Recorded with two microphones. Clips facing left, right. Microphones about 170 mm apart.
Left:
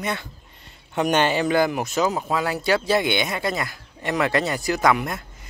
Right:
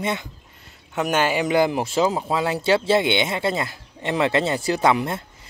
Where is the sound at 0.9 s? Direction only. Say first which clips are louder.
Left 1 dB; 5° right (ahead or behind).